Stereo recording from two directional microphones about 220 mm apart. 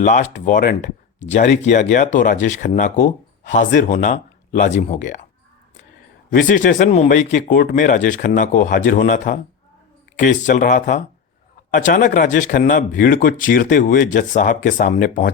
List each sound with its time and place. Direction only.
0.0 s speech: 30° left (ahead or behind)
6.3 s speech: 35° left (ahead or behind)